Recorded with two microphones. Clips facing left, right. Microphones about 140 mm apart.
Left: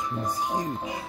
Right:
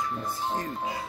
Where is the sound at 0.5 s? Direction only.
15° left (ahead or behind).